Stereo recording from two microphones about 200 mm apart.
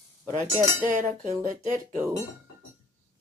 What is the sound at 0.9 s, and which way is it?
Speech, 40° right (ahead or behind).